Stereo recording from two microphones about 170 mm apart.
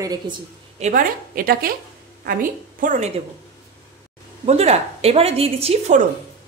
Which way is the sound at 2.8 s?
45° right (ahead or behind).